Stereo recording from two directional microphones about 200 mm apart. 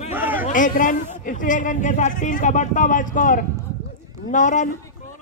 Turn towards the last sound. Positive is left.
turn(degrees=40)  # may be behind; listen again after turning